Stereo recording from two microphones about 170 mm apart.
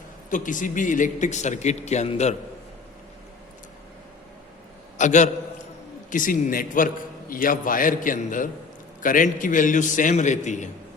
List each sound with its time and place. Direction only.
0.3 s a man's voice: 50° left (ahead or behind)
4.9 s a man's voice: 45° left (ahead or behind)